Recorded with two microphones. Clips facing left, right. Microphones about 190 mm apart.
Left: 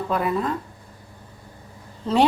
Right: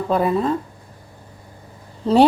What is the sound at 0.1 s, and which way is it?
Speech, 30° right (ahead or behind).